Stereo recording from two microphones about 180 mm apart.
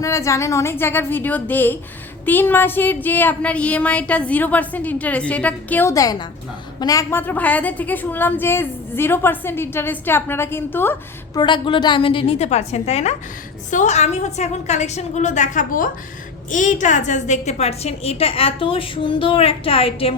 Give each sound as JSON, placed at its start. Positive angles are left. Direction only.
{"t": 0.0, "sound": "a woman's voice", "side_deg": 15}
{"t": 11.3, "sound": "a woman's voice", "side_deg": 25}